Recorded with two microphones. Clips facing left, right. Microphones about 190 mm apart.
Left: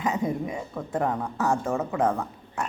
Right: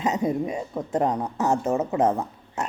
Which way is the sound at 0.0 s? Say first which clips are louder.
Right 3 dB; 25° right (ahead or behind).